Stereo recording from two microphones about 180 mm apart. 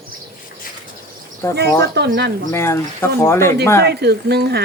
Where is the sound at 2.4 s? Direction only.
15° left (ahead or behind).